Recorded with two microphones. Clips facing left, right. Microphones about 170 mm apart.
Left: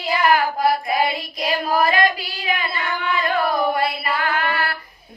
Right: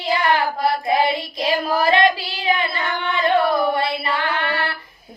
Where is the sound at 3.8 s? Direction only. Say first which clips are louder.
Even; 30° right (ahead or behind).